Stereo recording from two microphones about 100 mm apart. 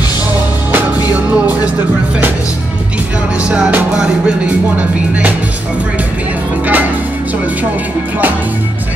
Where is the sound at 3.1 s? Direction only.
10° right (ahead or behind).